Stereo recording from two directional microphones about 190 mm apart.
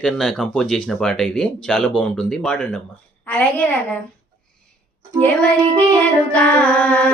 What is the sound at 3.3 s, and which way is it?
Child singing, 10° left (ahead or behind).